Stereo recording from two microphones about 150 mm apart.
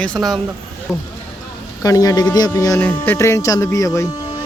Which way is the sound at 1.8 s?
25° left (ahead or behind).